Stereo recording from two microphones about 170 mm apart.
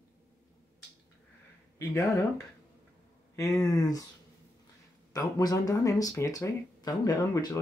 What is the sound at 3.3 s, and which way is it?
Speech, 20° left (ahead or behind).